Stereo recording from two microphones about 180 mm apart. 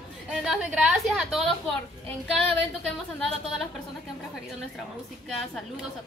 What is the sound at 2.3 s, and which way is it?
A woman's voice, centre (ahead or behind).